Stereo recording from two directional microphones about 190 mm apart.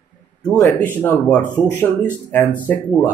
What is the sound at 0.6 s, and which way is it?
Speech, 10° left (ahead or behind).